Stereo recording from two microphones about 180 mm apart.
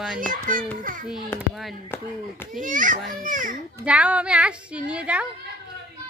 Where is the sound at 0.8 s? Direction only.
50° right (ahead or behind).